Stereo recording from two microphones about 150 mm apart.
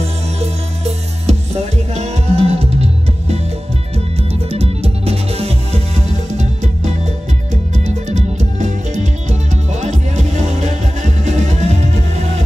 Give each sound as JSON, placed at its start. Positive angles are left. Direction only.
{"t": 1.2, "sound": "music", "side_deg": -45}
{"t": 4.5, "sound": "music", "side_deg": -40}